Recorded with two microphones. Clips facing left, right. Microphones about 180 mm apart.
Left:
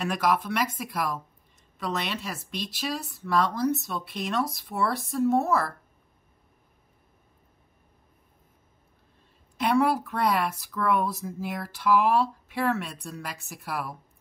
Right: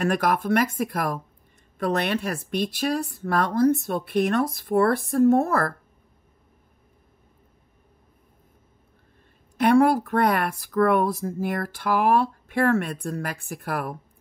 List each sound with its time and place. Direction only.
0.0 s speech: 50° right (ahead or behind)
9.6 s speech: 50° right (ahead or behind)